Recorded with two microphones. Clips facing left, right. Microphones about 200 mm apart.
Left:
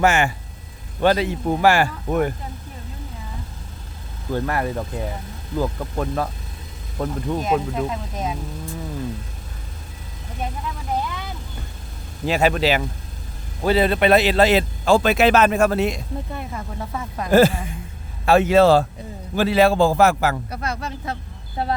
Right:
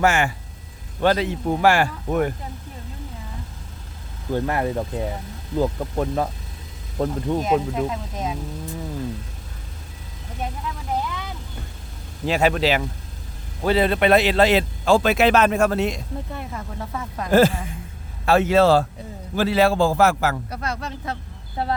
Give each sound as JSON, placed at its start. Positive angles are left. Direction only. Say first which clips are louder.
{"t": 0.0, "sound": "speech", "louder": "left 1 dB", "side_deg": 20}
{"t": 1.0, "sound": "speech", "louder": "left 1 dB", "side_deg": 10}
{"t": 4.3, "sound": "speech", "louder": "right 1 dB", "side_deg": -20}
{"t": 7.9, "sound": "speech", "louder": "left 1 dB", "side_deg": 5}
{"t": 12.2, "sound": "a man's voice", "louder": "left 1 dB", "side_deg": 5}